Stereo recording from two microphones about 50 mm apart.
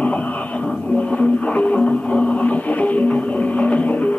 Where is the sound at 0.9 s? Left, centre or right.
Left.